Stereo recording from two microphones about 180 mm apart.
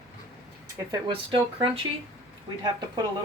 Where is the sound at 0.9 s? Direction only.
25° right (ahead or behind).